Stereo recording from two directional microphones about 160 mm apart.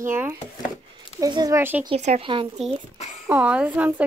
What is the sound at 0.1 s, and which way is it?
Speech, 15° right (ahead or behind).